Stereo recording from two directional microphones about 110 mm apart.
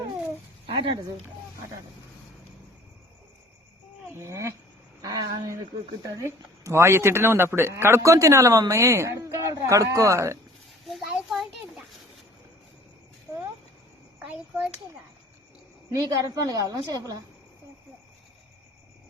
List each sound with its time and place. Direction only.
0.7 s speech: 50° right (ahead or behind)
4.1 s a woman's voice: 25° right (ahead or behind)
5.0 s a woman's voice: 40° right (ahead or behind)
10.9 s a sound: 5° right (ahead or behind)
14.2 s a child's voice: 15° right (ahead or behind)
15.9 s a woman's voice: 30° right (ahead or behind)